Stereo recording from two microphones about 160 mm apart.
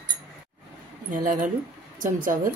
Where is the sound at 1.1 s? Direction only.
55° right (ahead or behind).